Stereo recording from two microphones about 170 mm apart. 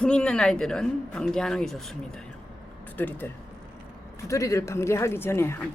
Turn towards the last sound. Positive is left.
turn(degrees=15)  # may be behind; listen again after turning